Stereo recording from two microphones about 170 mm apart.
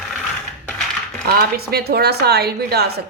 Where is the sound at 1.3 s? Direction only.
65° right (ahead or behind).